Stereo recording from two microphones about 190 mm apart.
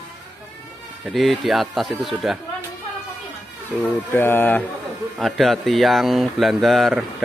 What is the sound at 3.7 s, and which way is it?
Speech, 5° left (ahead or behind).